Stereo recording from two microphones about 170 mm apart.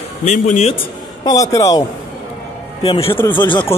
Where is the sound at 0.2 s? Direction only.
40° left (ahead or behind).